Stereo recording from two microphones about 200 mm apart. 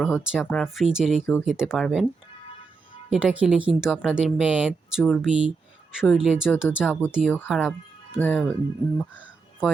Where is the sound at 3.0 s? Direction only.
5° right (ahead or behind).